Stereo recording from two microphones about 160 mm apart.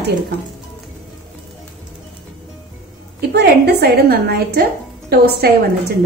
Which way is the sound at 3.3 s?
90° right.